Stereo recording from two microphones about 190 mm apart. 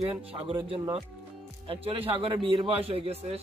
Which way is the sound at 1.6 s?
30° right (ahead or behind).